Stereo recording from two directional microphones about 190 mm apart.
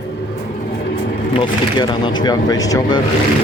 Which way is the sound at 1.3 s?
25° left (ahead or behind).